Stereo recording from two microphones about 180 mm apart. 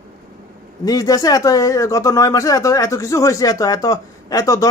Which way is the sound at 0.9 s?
20° left (ahead or behind).